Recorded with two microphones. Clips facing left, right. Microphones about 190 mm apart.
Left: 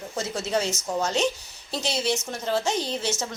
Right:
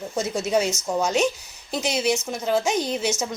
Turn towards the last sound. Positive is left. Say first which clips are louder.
# right 4 dB
turn(degrees=-15)  # may be behind; listen again after turning